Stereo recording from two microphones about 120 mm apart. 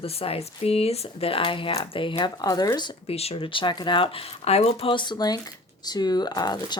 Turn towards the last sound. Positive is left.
turn(degrees=35)  # may be behind; listen again after turning